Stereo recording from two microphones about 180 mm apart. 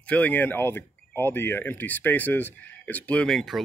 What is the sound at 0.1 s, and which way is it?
Speech, 10° left (ahead or behind).